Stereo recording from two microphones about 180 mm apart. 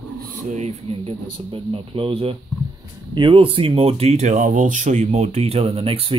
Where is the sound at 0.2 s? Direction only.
40° right (ahead or behind).